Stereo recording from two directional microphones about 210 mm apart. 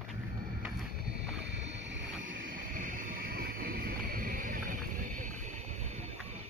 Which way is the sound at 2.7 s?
40° right (ahead or behind).